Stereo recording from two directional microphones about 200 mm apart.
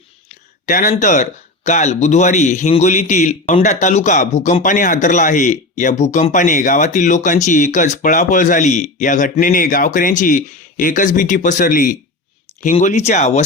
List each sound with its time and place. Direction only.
0.6 s speech: 40° left (ahead or behind)